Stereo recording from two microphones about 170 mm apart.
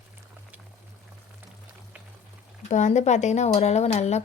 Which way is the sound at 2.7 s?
45° left (ahead or behind).